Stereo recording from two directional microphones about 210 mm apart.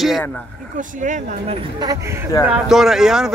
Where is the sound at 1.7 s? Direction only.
20° right (ahead or behind).